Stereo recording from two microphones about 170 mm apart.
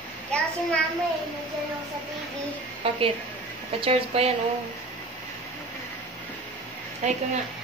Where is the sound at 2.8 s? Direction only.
35° right (ahead or behind).